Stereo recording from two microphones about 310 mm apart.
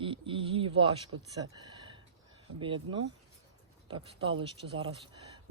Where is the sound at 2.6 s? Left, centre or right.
Centre.